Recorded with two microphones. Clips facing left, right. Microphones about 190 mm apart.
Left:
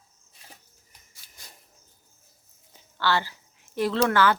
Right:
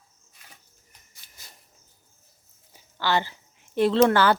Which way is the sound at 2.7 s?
15° right (ahead or behind).